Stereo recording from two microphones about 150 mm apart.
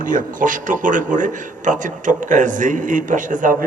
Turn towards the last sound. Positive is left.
turn(degrees=-65)  # may be behind; listen again after turning